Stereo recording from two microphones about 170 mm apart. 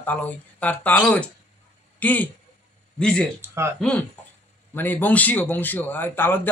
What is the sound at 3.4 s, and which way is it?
Speech, 15° right (ahead or behind).